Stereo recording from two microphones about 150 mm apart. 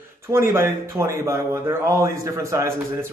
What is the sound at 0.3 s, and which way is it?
Speech, 15° right (ahead or behind).